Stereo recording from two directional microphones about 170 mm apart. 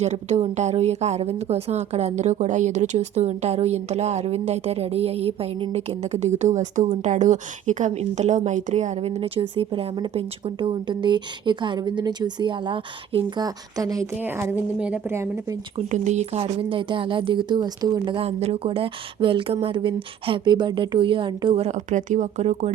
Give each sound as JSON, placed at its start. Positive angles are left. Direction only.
{"t": 0.0, "sound": "a woman's voice", "side_deg": -40}
{"t": 15.9, "sound": "a woman's voice", "side_deg": -45}